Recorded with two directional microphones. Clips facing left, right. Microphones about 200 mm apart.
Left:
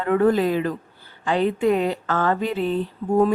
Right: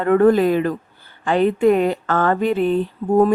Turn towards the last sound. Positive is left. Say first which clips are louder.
# right 4 dB
turn(degrees=-55)  # may be behind; listen again after turning